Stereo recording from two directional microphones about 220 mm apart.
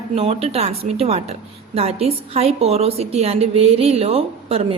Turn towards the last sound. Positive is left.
turn(degrees=-25)  # may be behind; listen again after turning